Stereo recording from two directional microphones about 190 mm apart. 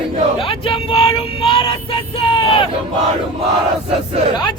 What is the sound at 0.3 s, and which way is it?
Vehicle, 30° left (ahead or behind).